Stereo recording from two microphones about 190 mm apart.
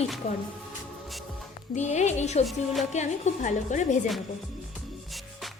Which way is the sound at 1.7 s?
40° left (ahead or behind).